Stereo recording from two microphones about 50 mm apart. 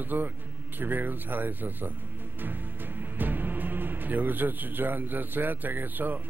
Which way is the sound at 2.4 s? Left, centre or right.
Right.